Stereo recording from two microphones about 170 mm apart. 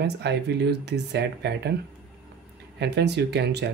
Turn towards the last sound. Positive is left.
turn(degrees=-80)